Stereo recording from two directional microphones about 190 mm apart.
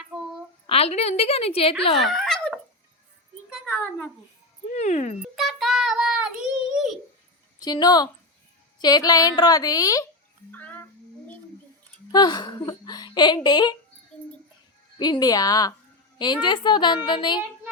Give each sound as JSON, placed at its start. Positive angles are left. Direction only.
{"t": 0.7, "sound": "a woman's voice", "side_deg": 35}
{"t": 2.0, "sound": "a sound", "side_deg": 0}
{"t": 4.7, "sound": "cat", "side_deg": 40}
{"t": 5.2, "sound": "child singing", "side_deg": 0}
{"t": 7.6, "sound": "a woman's voice", "side_deg": 20}
{"t": 10.5, "sound": "music", "side_deg": 10}
{"t": 12.1, "sound": "speech", "side_deg": 20}
{"t": 14.9, "sound": "a woman's voice", "side_deg": 20}